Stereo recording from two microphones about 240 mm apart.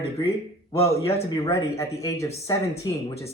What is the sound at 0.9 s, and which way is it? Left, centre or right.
Speech, centre.